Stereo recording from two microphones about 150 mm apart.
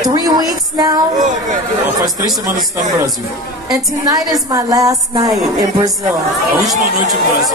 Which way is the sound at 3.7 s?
25° right (ahead or behind).